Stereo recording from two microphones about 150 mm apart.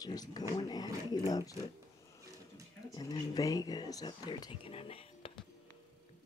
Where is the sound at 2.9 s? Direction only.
25° left (ahead or behind).